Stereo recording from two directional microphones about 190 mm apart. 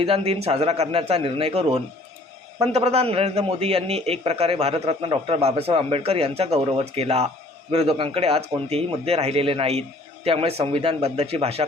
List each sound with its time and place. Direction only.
0.0 s a man's voice: 30° right (ahead or behind)